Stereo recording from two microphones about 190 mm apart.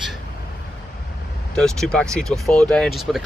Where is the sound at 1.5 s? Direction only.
5° left (ahead or behind).